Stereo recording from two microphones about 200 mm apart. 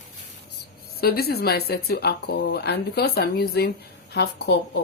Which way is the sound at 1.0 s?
50° left (ahead or behind).